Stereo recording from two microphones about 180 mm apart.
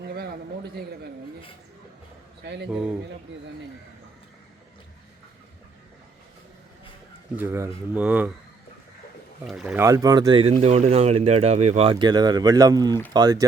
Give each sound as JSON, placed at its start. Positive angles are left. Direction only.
{"t": 2.4, "sound": "speech", "side_deg": -70}
{"t": 2.6, "sound": "speech", "side_deg": -5}
{"t": 7.3, "sound": "speech", "side_deg": -15}
{"t": 9.5, "sound": "speech", "side_deg": -5}
{"t": 9.8, "sound": "speech", "side_deg": -20}
{"t": 10.5, "sound": "speech", "side_deg": -35}